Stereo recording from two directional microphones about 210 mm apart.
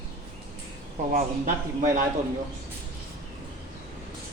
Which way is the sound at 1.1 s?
40° right (ahead or behind).